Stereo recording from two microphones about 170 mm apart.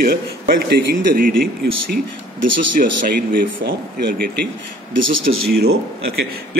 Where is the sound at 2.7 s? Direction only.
55° right (ahead or behind).